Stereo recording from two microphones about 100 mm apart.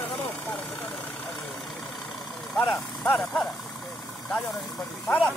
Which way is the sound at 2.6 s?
20° left (ahead or behind).